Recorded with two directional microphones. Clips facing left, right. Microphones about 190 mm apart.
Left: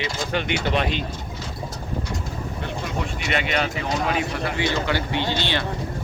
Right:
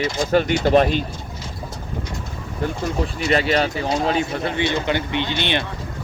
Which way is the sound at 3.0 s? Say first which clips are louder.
Right 8 dB; 35° right (ahead or behind).